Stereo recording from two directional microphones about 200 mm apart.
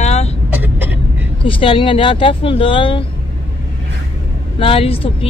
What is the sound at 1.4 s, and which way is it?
Speech, 25° left (ahead or behind).